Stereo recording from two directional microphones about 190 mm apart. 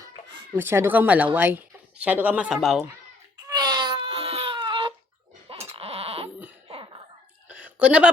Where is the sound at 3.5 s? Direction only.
20° right (ahead or behind).